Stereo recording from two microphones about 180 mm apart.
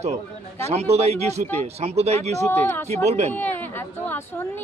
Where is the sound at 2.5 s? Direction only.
15° left (ahead or behind).